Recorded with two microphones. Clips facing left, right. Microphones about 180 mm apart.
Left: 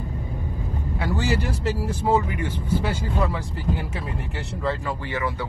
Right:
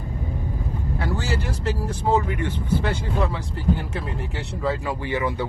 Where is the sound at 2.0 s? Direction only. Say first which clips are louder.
Right 1 dB; 10° left (ahead or behind).